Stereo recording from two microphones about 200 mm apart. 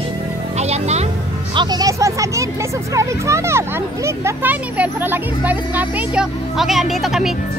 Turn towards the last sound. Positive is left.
turn(degrees=0)  # may be behind; listen again after turning